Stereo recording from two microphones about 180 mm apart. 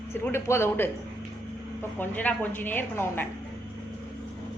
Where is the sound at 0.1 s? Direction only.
15° left (ahead or behind).